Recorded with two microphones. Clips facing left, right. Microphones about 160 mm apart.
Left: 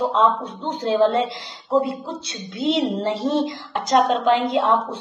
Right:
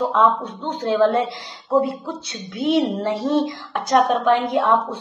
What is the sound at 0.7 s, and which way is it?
Speech, 20° left (ahead or behind).